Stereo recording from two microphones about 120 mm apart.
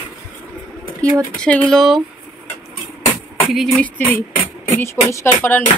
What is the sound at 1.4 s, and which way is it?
Speech, 10° left (ahead or behind).